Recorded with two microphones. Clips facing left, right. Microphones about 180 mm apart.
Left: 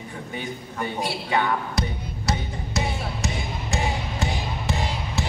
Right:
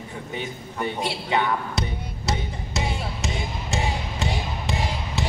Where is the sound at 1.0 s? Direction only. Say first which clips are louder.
Left 1 dB; 20° right (ahead or behind).